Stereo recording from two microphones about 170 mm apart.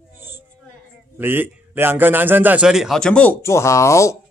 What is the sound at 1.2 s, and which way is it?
A man's voice, 10° right (ahead or behind).